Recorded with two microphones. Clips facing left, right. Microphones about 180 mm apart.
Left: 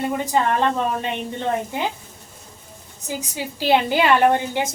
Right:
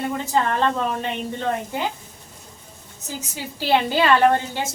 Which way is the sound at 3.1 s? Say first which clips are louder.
Left 2 dB; 15° left (ahead or behind).